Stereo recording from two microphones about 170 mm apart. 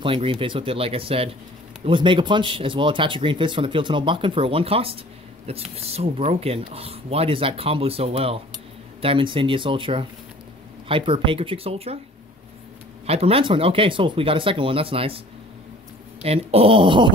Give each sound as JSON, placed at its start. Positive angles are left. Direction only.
{"t": 0.0, "sound": "speech", "side_deg": -30}
{"t": 13.0, "sound": "speech", "side_deg": -35}
{"t": 16.2, "sound": "speech", "side_deg": -35}